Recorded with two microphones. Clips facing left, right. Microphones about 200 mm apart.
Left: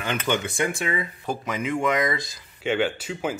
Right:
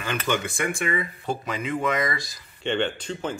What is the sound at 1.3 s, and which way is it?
Speech, 10° left (ahead or behind).